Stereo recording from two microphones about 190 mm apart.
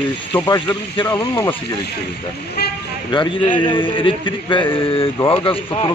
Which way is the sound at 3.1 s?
25° left (ahead or behind).